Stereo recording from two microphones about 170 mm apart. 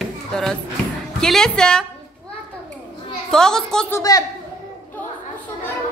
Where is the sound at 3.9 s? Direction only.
20° left (ahead or behind).